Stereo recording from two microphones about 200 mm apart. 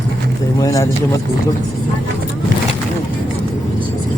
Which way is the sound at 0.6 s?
15° left (ahead or behind).